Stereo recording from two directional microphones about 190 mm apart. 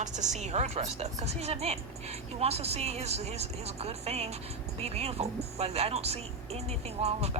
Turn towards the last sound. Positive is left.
turn(degrees=-35)  # may be behind; listen again after turning